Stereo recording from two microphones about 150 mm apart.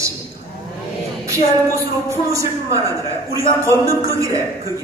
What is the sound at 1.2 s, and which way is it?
A man's voice, 20° right (ahead or behind).